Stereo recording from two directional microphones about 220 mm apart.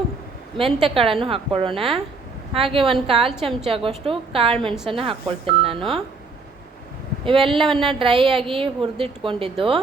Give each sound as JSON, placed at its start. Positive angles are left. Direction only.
{"t": 0.5, "sound": "a woman's voice", "side_deg": -25}
{"t": 7.3, "sound": "a woman's voice", "side_deg": -25}